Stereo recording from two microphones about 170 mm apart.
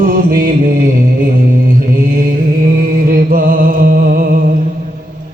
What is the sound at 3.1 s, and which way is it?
Music, 60° right (ahead or behind).